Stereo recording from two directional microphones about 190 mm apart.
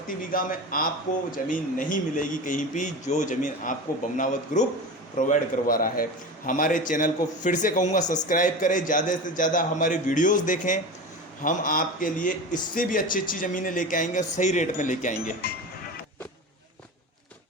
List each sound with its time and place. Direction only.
0.3 s speech: 50° left (ahead or behind)